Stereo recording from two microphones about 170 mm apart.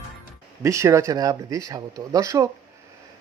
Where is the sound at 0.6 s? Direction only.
15° right (ahead or behind).